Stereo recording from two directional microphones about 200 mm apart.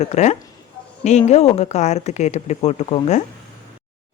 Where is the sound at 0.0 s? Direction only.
35° left (ahead or behind).